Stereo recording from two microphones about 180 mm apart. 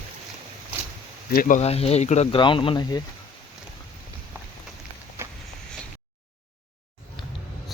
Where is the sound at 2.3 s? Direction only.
25° left (ahead or behind).